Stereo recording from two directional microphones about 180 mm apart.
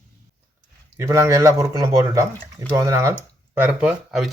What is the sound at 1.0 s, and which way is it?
Speech, 15° right (ahead or behind).